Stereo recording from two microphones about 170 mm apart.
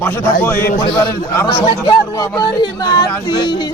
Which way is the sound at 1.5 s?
30° left (ahead or behind).